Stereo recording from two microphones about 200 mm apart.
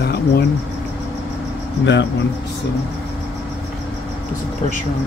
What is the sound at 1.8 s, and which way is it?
Speech, 65° left (ahead or behind).